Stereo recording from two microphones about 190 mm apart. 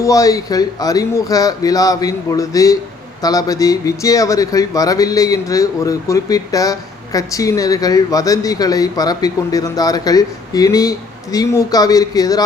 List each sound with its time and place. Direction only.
0.0 s speech: 15° left (ahead or behind)